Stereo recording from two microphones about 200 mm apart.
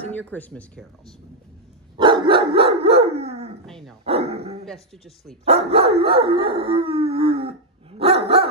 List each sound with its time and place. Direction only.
0.0 s speech: 10° left (ahead or behind)
2.2 s dog: 25° right (ahead or behind)
3.6 s dog: centre (ahead or behind)
4.0 s dog: 30° right (ahead or behind)
4.6 s speech: centre (ahead or behind)
5.4 s speech: 30° right (ahead or behind)
6.0 s howl: 25° right (ahead or behind)